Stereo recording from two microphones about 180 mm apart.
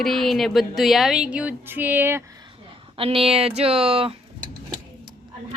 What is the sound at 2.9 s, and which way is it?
Speech, 30° right (ahead or behind).